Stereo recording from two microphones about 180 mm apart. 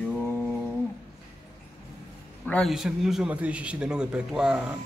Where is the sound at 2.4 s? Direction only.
5° left (ahead or behind).